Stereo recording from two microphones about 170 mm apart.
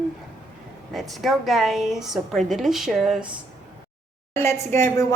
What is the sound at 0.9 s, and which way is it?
Speech, centre (ahead or behind).